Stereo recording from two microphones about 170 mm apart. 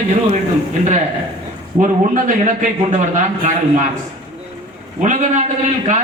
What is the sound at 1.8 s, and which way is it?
A man's voice, 50° right (ahead or behind).